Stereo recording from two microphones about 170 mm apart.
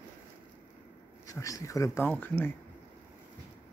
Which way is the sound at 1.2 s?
20° left (ahead or behind).